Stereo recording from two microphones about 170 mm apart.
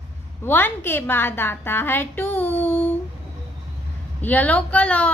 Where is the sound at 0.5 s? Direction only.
10° left (ahead or behind).